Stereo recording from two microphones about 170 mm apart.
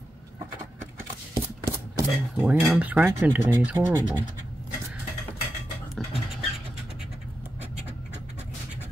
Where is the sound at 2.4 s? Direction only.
Centre (ahead or behind).